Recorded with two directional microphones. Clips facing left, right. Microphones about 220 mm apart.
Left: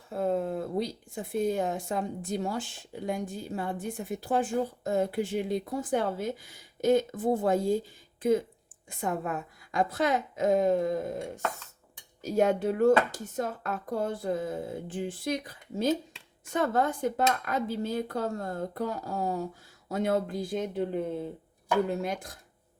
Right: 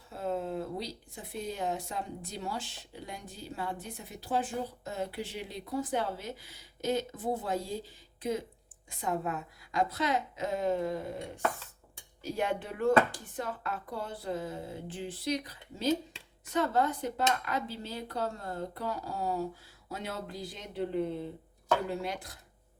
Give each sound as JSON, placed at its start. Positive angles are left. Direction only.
{"t": 0.1, "sound": "speech", "side_deg": 50}